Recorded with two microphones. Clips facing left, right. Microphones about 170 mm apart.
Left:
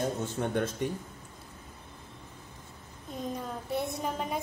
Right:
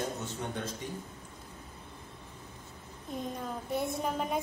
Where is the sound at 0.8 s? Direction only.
60° left (ahead or behind).